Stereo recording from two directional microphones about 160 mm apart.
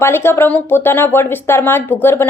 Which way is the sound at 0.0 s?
15° left (ahead or behind).